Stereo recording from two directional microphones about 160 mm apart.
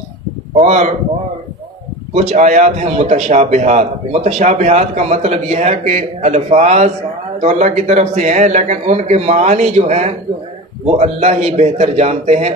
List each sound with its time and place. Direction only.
0.6 s a man's voice: 45° right (ahead or behind)
2.1 s a man's voice: 45° right (ahead or behind)